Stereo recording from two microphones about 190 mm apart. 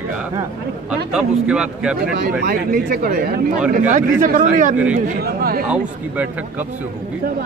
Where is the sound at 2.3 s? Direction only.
55° right (ahead or behind).